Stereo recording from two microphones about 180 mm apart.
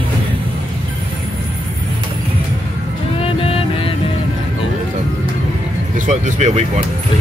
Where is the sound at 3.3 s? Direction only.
30° left (ahead or behind).